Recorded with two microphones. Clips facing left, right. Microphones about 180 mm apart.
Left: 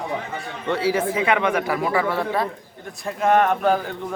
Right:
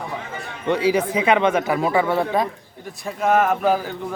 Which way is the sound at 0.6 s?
15° right (ahead or behind).